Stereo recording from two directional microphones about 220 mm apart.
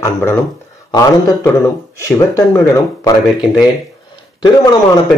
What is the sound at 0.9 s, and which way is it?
Speech, 15° left (ahead or behind).